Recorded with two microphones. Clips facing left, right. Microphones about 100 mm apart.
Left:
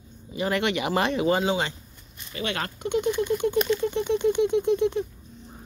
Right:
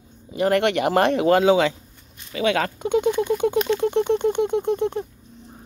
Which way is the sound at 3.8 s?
65° right (ahead or behind).